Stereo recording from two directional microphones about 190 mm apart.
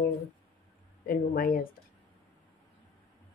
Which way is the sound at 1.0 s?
50° left (ahead or behind).